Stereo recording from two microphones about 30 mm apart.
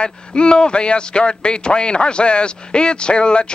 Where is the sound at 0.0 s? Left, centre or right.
Left.